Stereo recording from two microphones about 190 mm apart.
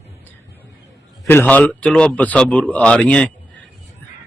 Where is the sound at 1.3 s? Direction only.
10° left (ahead or behind).